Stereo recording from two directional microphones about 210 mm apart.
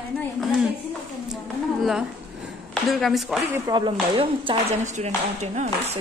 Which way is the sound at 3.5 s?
20° right (ahead or behind).